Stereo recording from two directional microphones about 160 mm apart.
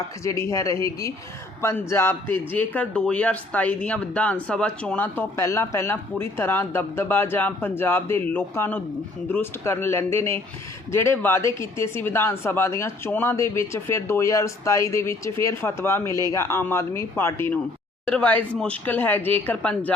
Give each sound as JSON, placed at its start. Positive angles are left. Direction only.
{"t": 0.3, "sound": "a man's voice", "side_deg": 20}